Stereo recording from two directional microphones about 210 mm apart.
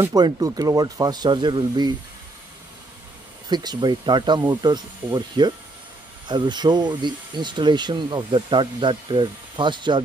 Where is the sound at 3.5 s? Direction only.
20° right (ahead or behind).